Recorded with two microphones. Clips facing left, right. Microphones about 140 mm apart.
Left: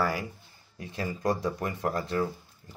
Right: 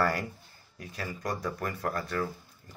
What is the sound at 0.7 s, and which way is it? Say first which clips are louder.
Speech: left 4 dB; 25° left (ahead or behind).